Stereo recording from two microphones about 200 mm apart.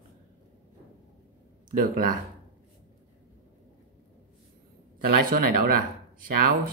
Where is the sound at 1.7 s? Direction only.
45° right (ahead or behind).